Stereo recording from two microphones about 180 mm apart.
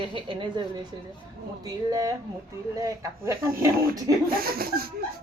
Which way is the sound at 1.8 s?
20° right (ahead or behind).